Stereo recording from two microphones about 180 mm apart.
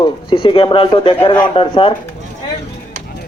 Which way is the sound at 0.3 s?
25° left (ahead or behind).